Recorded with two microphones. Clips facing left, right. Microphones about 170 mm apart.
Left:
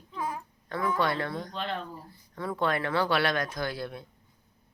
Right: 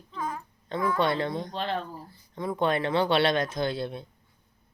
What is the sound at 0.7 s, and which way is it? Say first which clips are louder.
Speech: right 2 dB; 20° right (ahead or behind).